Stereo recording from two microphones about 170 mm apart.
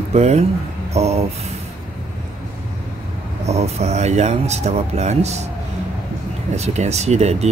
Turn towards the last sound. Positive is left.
turn(degrees=-40)  # may be behind; listen again after turning